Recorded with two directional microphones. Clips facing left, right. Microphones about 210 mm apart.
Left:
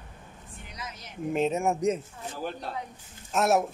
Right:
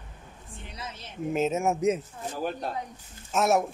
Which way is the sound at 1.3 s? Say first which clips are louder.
Even; centre (ahead or behind).